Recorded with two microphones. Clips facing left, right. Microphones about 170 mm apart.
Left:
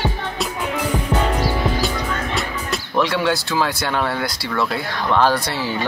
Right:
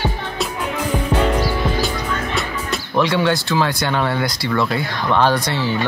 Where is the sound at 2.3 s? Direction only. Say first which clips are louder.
Right 1 dB; centre (ahead or behind).